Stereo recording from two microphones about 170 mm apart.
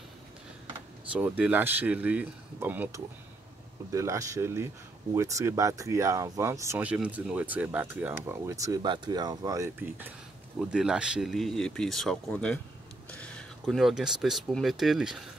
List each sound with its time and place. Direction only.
1.1 s speech: 10° right (ahead or behind)